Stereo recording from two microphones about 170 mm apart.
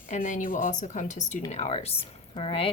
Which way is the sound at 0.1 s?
50° left (ahead or behind).